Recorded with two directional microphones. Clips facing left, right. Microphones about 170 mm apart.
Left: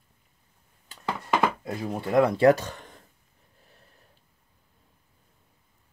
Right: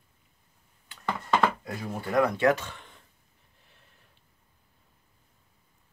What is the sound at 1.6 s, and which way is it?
Speech, 25° left (ahead or behind).